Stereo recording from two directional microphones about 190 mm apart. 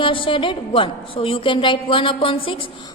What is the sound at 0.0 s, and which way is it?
A woman's voice, 25° left (ahead or behind).